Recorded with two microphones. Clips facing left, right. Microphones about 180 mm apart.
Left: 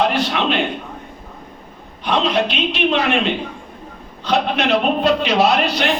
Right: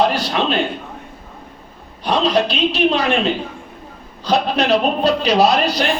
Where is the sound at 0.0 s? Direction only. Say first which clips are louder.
Right 1 dB; 35° right (ahead or behind).